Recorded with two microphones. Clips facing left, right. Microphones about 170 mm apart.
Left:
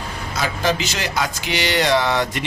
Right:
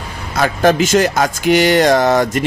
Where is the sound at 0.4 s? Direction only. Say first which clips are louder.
Right 9 dB; 50° right (ahead or behind).